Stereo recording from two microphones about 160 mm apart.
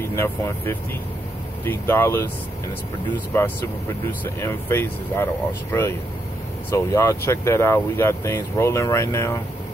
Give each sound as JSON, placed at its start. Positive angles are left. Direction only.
{"t": 0.1, "sound": "speech", "side_deg": 15}
{"t": 4.2, "sound": "speech", "side_deg": 15}